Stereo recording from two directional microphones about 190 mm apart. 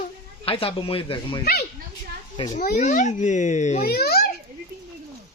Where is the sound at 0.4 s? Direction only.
30° left (ahead or behind).